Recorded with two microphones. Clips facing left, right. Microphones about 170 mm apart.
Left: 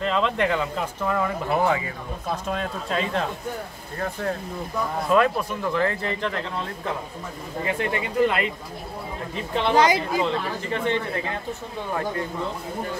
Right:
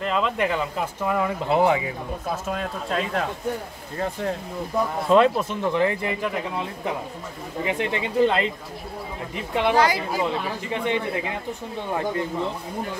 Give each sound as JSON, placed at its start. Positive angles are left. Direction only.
{"t": 0.0, "sound": "speech", "side_deg": -5}
{"t": 1.0, "sound": "speech", "side_deg": -15}
{"t": 2.4, "sound": "speech", "side_deg": -5}
{"t": 5.0, "sound": "speech", "side_deg": -25}
{"t": 9.3, "sound": "speech", "side_deg": -15}
{"t": 9.8, "sound": "speech", "side_deg": 20}
{"t": 10.2, "sound": "speech", "side_deg": -15}